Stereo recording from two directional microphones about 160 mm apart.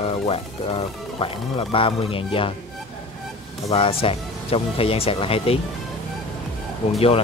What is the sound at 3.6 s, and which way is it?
Speech, 35° left (ahead or behind).